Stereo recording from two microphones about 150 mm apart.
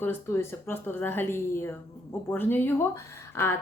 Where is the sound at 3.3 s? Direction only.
15° left (ahead or behind).